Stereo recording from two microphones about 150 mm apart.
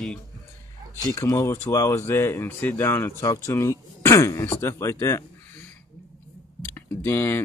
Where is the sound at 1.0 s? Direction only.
25° left (ahead or behind).